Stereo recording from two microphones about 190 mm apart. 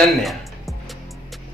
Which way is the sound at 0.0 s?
Centre (ahead or behind).